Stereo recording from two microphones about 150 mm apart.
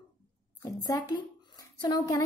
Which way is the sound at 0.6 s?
25° left (ahead or behind).